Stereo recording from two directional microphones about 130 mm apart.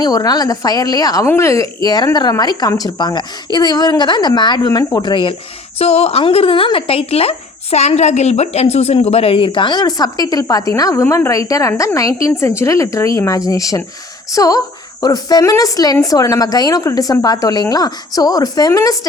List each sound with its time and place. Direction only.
0.0 s a woman's voice: 30° left (ahead or behind)
5.8 s a woman's voice: 55° left (ahead or behind); by 18.9 s 25° left (ahead or behind)